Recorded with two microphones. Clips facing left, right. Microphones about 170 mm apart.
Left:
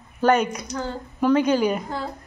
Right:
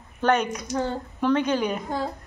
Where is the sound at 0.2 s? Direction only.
5° left (ahead or behind).